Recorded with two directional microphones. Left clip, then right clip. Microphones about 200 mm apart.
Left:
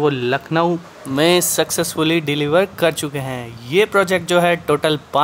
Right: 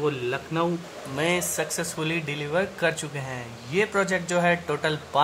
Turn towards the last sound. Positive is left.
turn(degrees=35)  # may be behind; listen again after turning